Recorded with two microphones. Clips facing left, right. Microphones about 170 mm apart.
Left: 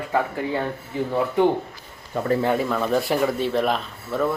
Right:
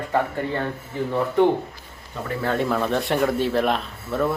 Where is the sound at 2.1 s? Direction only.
55° left (ahead or behind).